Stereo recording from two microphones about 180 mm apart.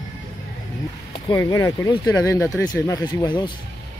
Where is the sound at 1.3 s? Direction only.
20° left (ahead or behind).